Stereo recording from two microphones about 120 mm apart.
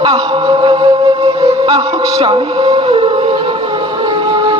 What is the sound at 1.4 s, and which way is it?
Music, 55° right (ahead or behind).